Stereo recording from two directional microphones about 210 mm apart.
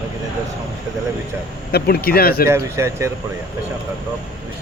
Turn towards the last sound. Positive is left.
turn(degrees=-15)  # may be behind; listen again after turning